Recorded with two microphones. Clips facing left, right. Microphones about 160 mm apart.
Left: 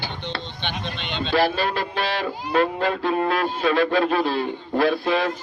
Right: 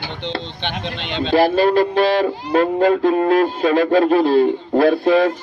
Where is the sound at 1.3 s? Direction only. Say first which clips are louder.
Right 8 dB; 45° right (ahead or behind).